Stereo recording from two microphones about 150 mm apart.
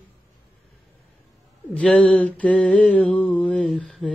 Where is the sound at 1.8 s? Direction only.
10° left (ahead or behind).